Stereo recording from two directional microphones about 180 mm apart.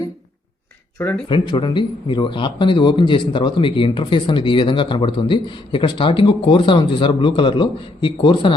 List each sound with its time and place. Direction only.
0.9 s speech: 10° left (ahead or behind)
1.3 s speech: 25° left (ahead or behind)